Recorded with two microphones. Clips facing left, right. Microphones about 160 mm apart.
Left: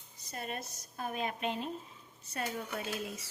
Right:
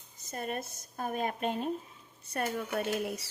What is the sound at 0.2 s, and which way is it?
Speech, 50° right (ahead or behind).